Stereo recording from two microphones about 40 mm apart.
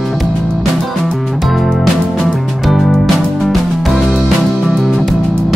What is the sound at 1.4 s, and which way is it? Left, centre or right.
Music, centre.